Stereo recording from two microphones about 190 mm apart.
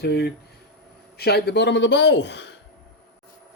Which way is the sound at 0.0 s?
60° left (ahead or behind).